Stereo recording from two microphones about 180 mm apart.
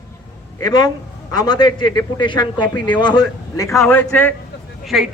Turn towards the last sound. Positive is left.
turn(degrees=0)  # may be behind; listen again after turning